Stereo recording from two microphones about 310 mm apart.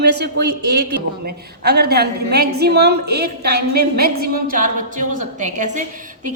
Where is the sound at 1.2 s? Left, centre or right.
Right.